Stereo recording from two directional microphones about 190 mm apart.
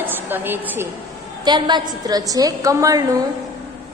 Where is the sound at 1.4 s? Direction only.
20° right (ahead or behind).